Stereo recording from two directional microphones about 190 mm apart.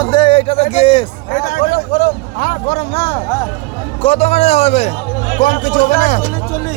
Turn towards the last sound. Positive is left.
turn(degrees=40)  # may be behind; listen again after turning